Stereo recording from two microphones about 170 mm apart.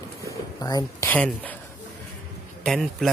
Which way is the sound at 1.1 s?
10° left (ahead or behind).